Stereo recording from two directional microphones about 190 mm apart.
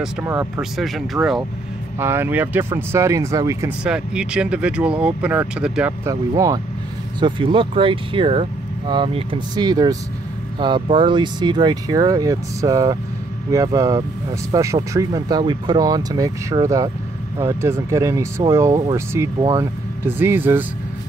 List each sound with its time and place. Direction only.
0.2 s speech: 15° right (ahead or behind)
0.6 s speech: centre (ahead or behind)
2.0 s speech: 10° right (ahead or behind)
3.8 s speech: 5° right (ahead or behind)